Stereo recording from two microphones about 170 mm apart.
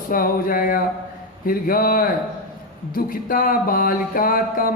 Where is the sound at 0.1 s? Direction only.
55° left (ahead or behind).